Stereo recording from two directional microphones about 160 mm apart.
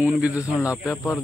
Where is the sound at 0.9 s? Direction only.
15° left (ahead or behind).